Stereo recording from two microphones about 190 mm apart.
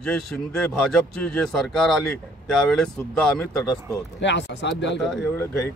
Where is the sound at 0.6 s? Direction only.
5° left (ahead or behind).